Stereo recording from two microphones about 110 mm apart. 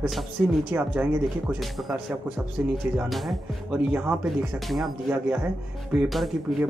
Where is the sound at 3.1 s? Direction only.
Centre (ahead or behind).